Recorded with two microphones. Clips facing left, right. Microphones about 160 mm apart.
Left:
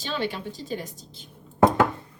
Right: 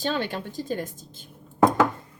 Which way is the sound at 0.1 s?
50° right (ahead or behind).